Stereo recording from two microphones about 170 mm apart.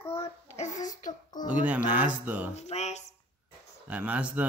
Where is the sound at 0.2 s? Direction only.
40° left (ahead or behind).